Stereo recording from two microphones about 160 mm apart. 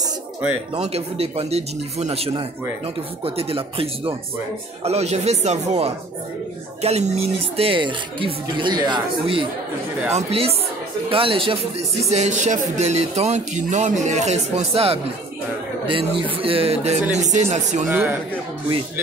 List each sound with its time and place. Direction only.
0.7 s speech: 40° right (ahead or behind)
12.0 s speech: 45° right (ahead or behind)
17.8 s speech: 10° right (ahead or behind)